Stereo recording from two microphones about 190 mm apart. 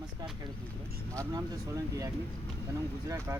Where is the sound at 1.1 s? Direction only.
15° right (ahead or behind).